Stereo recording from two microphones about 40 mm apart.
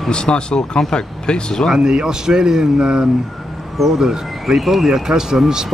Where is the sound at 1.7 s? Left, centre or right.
Centre.